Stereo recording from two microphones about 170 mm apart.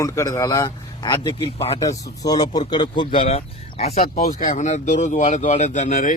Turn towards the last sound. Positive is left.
turn(degrees=50)  # may be behind; listen again after turning